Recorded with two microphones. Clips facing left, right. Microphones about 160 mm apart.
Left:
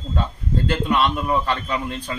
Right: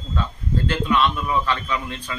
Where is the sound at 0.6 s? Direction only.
45° left (ahead or behind).